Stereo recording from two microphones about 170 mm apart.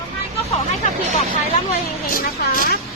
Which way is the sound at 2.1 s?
55° left (ahead or behind).